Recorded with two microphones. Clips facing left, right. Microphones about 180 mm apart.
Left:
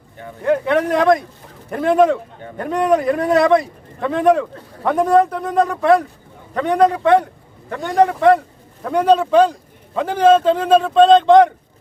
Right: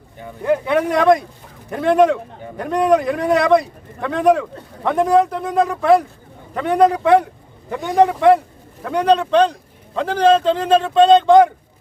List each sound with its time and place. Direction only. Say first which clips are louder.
0.2 s speech: left 1 dB; 5° right (ahead or behind)